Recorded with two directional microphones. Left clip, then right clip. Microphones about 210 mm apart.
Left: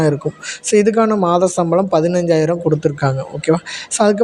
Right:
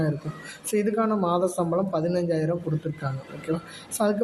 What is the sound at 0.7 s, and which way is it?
A man's voice, 35° left (ahead or behind).